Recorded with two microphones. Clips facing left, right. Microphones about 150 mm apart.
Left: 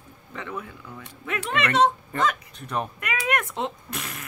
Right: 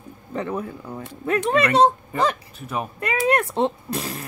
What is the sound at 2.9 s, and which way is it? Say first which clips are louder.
Speech: right 11 dB; 30° right (ahead or behind).